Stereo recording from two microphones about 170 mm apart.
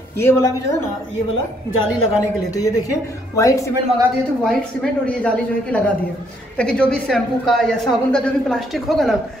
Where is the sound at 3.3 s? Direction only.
20° left (ahead or behind).